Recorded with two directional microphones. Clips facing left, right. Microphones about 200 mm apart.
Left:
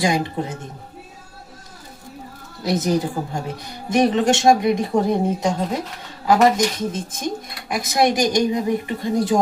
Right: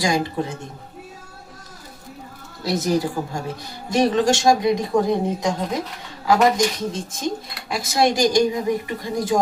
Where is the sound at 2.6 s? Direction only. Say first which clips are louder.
Left 1 dB; 20° left (ahead or behind).